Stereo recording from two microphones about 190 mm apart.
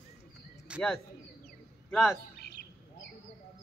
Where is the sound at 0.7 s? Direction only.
5° right (ahead or behind).